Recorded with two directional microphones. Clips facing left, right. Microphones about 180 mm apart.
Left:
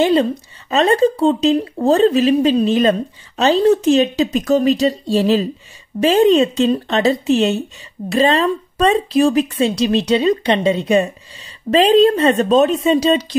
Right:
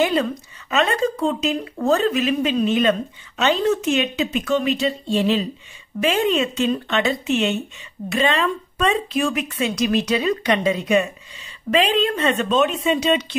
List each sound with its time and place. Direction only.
0.0 s speech: 30° left (ahead or behind)